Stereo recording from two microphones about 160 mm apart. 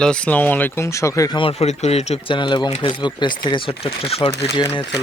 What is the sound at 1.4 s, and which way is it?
Speech, 40° left (ahead or behind).